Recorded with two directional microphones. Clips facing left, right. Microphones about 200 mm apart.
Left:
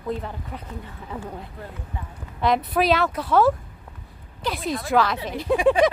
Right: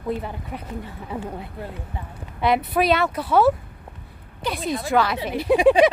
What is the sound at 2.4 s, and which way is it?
Speech, 5° right (ahead or behind).